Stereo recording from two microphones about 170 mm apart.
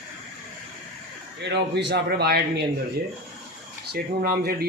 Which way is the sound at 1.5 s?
85° right.